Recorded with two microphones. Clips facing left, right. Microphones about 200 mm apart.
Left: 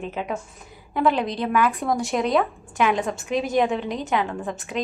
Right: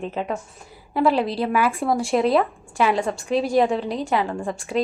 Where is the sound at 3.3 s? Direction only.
30° right (ahead or behind).